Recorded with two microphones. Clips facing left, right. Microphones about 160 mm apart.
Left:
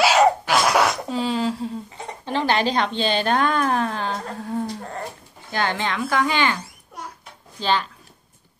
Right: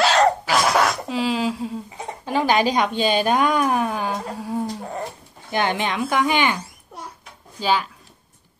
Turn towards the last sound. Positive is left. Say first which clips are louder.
# right 1 dB
turn(degrees=-10)  # may be behind; listen again after turning